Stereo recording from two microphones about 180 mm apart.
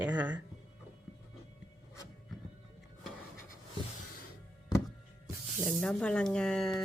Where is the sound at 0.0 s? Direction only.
10° right (ahead or behind).